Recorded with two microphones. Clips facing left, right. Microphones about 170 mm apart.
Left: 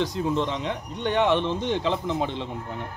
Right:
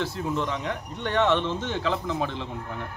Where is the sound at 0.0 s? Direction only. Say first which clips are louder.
Left 3 dB; 20° left (ahead or behind).